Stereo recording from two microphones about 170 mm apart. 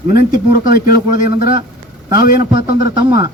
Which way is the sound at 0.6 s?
25° right (ahead or behind).